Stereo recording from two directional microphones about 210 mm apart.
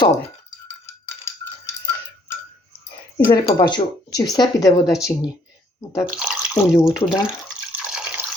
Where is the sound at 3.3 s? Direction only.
20° left (ahead or behind).